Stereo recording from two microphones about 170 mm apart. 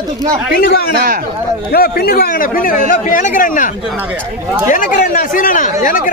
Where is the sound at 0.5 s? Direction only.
65° left (ahead or behind).